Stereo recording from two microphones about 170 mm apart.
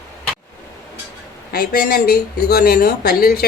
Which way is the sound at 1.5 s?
65° left (ahead or behind).